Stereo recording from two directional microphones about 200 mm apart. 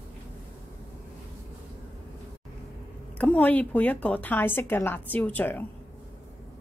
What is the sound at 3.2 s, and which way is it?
A woman's voice, 5° left (ahead or behind).